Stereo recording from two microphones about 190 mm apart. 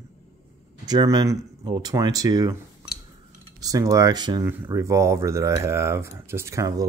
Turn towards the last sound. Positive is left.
turn(degrees=-15)  # may be behind; listen again after turning